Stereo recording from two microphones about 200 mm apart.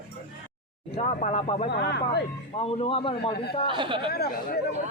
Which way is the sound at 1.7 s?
55° left (ahead or behind).